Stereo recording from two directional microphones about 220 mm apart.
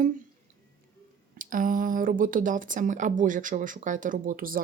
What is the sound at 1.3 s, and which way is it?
Speech, 40° right (ahead or behind).